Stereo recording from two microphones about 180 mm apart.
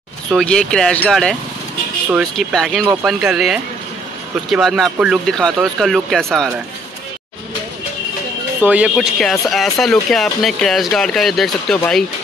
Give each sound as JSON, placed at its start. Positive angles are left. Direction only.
{"t": 0.3, "sound": "speech", "side_deg": 5}
{"t": 8.5, "sound": "speech", "side_deg": -10}